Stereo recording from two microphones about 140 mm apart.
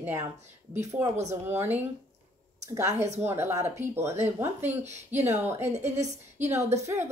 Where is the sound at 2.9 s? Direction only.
55° right (ahead or behind).